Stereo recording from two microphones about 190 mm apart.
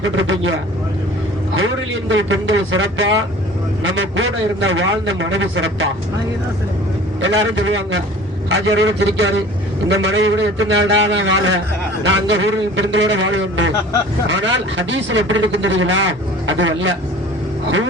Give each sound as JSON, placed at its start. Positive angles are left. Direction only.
{"t": 0.0, "sound": "a man's voice", "side_deg": -80}
{"t": 7.2, "sound": "speech", "side_deg": -80}